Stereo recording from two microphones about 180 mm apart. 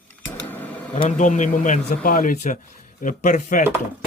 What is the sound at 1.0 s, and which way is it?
Speech, 45° left (ahead or behind).